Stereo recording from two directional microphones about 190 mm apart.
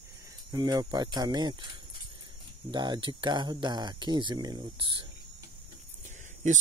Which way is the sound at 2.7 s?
20° right (ahead or behind).